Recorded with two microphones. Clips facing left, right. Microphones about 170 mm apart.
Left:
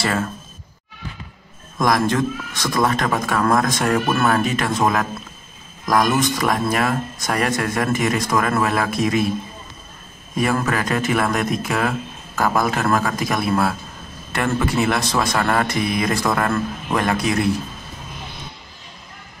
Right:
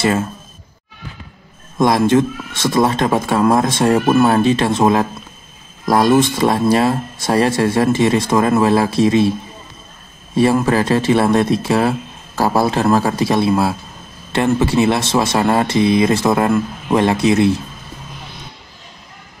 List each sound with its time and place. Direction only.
1.8 s speech: 25° right (ahead or behind)
10.3 s speech: 30° right (ahead or behind)